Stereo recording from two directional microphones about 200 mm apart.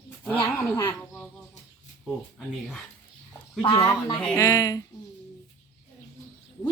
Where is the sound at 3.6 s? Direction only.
20° left (ahead or behind).